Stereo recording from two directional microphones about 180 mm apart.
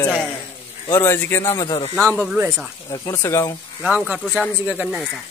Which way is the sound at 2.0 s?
10° right (ahead or behind).